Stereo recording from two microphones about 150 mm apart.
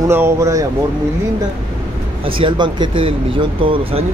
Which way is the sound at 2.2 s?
35° right (ahead or behind).